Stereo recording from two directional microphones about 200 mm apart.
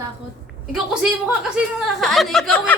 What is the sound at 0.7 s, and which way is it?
A woman's voice, centre (ahead or behind).